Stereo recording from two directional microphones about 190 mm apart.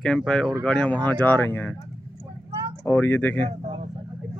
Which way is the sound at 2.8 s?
10° left (ahead or behind).